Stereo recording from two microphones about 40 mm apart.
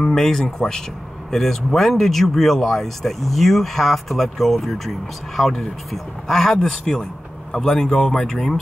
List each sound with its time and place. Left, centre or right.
0.0 s speech: centre